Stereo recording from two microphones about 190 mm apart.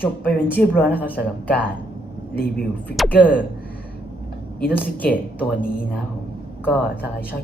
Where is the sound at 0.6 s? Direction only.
50° left (ahead or behind).